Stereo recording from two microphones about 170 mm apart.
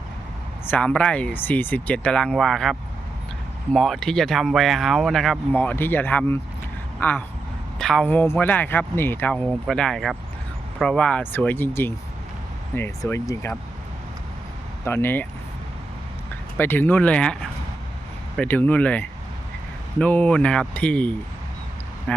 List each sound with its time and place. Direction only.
0.7 s speech: 5° left (ahead or behind)
14.8 s speech: 15° left (ahead or behind)
16.6 s speech: 10° left (ahead or behind)